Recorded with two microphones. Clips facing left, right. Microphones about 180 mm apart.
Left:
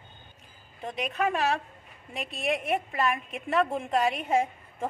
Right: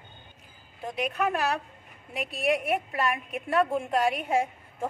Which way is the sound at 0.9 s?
Centre (ahead or behind).